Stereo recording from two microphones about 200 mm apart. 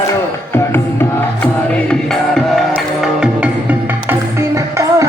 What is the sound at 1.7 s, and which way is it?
Music, 5° left (ahead or behind).